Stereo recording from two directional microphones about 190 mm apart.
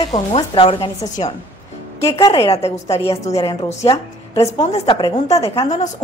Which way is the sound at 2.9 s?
30° left (ahead or behind).